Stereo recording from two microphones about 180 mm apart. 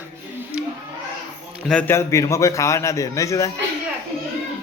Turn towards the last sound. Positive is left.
turn(degrees=15)  # may be behind; listen again after turning